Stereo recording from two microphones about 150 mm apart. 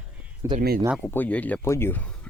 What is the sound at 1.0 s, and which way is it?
Speech, 10° left (ahead or behind).